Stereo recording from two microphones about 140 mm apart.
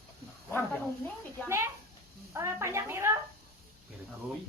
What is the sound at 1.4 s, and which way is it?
Speech, 20° right (ahead or behind).